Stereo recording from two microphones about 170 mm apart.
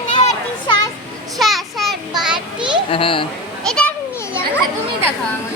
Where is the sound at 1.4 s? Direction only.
Centre (ahead or behind).